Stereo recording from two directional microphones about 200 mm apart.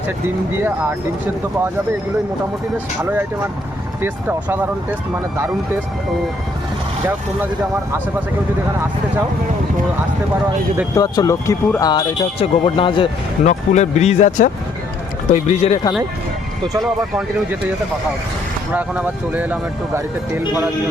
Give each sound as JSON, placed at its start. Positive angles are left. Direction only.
{"t": 3.0, "sound": "speech", "side_deg": -10}
{"t": 10.9, "sound": "speech", "side_deg": 20}
{"t": 13.4, "sound": "speech", "side_deg": 35}
{"t": 16.8, "sound": "speech", "side_deg": -5}
{"t": 18.7, "sound": "speech", "side_deg": -10}